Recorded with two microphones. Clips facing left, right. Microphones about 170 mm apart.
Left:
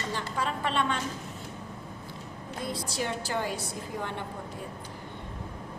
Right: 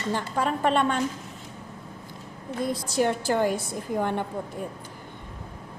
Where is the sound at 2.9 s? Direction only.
50° right (ahead or behind).